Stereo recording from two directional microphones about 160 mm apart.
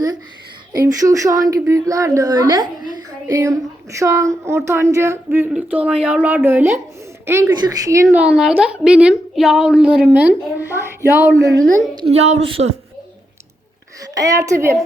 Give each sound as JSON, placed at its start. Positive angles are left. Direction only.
{"t": 0.9, "sound": "a woman's voice", "side_deg": -20}
{"t": 8.1, "sound": "a woman's voice", "side_deg": -5}
{"t": 12.1, "sound": "speech", "side_deg": -40}
{"t": 14.0, "sound": "a woman's voice", "side_deg": -20}